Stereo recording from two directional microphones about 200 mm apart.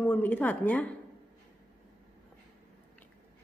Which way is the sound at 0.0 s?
10° left (ahead or behind).